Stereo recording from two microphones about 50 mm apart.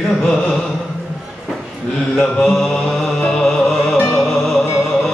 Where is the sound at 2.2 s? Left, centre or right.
Left.